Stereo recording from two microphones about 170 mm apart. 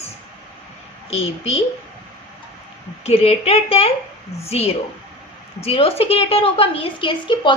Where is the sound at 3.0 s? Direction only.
35° left (ahead or behind).